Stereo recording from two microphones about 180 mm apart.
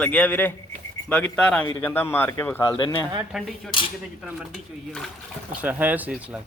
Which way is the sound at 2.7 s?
25° left (ahead or behind).